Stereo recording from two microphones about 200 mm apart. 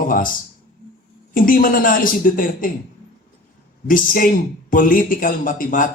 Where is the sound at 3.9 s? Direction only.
45° left (ahead or behind).